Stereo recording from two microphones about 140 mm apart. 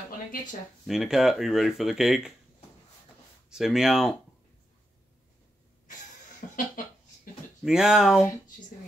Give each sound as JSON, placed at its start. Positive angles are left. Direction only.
{"t": 0.8, "sound": "speech", "side_deg": -5}
{"t": 3.4, "sound": "speech", "side_deg": -5}
{"t": 6.4, "sound": "speech", "side_deg": 70}
{"t": 7.6, "sound": "speech", "side_deg": -5}